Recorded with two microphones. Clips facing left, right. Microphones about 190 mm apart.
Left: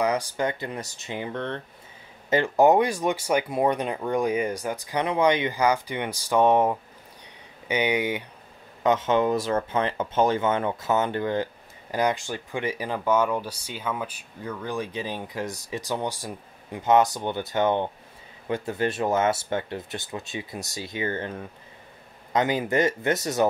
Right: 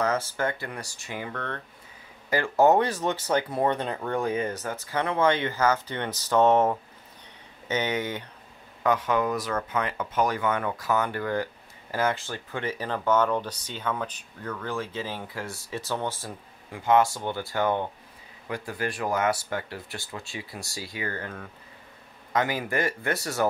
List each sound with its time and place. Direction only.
0.0 s speech: 15° left (ahead or behind)
8.8 s speech: 25° left (ahead or behind)